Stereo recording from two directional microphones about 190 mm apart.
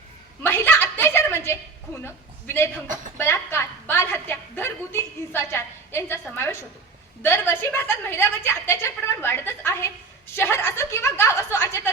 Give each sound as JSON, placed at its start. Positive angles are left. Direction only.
{"t": 0.4, "sound": "chuckle", "side_deg": 10}
{"t": 2.0, "sound": "a sound", "side_deg": 10}
{"t": 6.2, "sound": "a woman's voice", "side_deg": 10}